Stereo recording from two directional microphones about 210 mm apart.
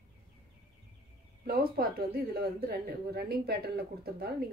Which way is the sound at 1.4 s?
45° right (ahead or behind).